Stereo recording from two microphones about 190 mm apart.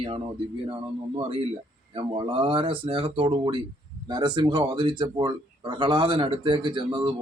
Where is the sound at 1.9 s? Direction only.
30° right (ahead or behind).